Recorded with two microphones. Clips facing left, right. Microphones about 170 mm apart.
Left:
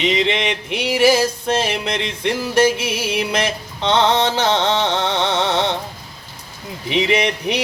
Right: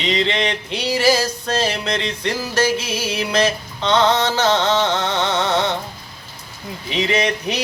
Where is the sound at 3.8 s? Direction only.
25° left (ahead or behind).